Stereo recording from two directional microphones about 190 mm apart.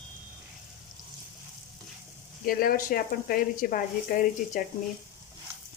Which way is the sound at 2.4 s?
50° left (ahead or behind).